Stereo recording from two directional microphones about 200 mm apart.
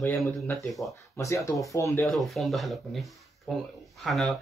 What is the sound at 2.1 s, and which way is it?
Speech, centre (ahead or behind).